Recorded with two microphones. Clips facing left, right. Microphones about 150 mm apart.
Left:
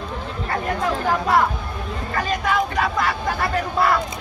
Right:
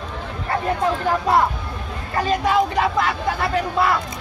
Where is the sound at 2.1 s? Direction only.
30° right (ahead or behind).